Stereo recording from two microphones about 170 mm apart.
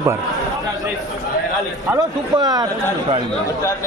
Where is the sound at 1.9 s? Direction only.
20° right (ahead or behind).